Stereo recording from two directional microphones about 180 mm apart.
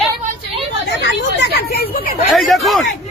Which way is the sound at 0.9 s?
70° left (ahead or behind).